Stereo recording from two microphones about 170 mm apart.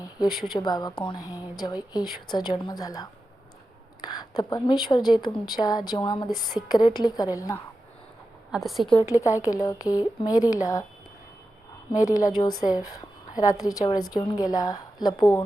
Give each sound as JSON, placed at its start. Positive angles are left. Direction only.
{"t": 0.6, "sound": "a woman's voice", "side_deg": 25}
{"t": 8.5, "sound": "a woman's voice", "side_deg": 0}
{"t": 9.2, "sound": "a woman's voice", "side_deg": 20}
{"t": 11.9, "sound": "a woman's voice", "side_deg": 20}